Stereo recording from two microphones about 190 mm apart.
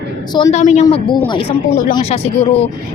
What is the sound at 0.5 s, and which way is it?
Speech, 35° left (ahead or behind).